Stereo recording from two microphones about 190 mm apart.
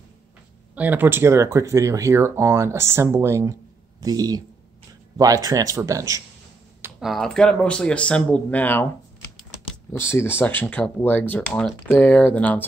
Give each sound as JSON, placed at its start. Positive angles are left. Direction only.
{"t": 0.7, "sound": "speech", "side_deg": -10}
{"t": 6.8, "sound": "speech", "side_deg": 0}
{"t": 9.9, "sound": "speech", "side_deg": 15}